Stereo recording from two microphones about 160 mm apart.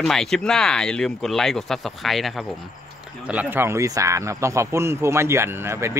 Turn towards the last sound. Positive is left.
turn(degrees=-15)  # may be behind; listen again after turning